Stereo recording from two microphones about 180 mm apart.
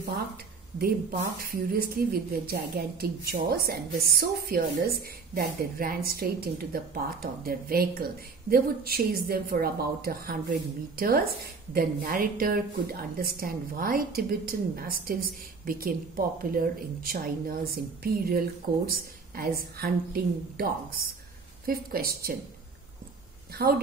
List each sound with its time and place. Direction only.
1.5 s a woman's voice: 55° right (ahead or behind)
23.5 s speech: 55° right (ahead or behind)